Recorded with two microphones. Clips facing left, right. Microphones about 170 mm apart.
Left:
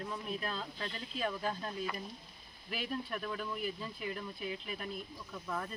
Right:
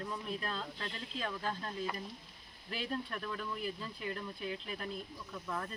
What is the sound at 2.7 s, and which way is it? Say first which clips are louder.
Speech: even; 5° left (ahead or behind).